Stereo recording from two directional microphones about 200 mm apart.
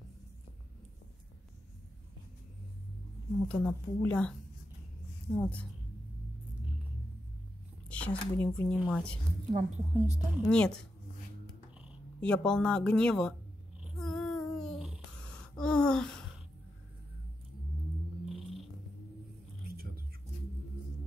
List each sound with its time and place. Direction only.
3.4 s speech: 5° left (ahead or behind)
7.9 s speech: 5° left (ahead or behind)
9.5 s a woman's voice: 35° right (ahead or behind)
10.5 s speech: 5° left (ahead or behind)
12.2 s speech: 5° left (ahead or behind)
13.9 s child singing: centre (ahead or behind)
18.2 s cat: centre (ahead or behind)
19.6 s music: 50° right (ahead or behind)